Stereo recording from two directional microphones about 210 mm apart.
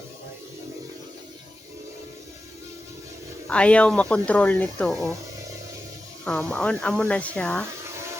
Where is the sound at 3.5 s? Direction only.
5° left (ahead or behind).